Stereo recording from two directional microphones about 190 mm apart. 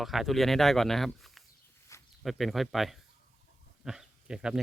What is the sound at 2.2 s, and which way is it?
Speech, centre (ahead or behind).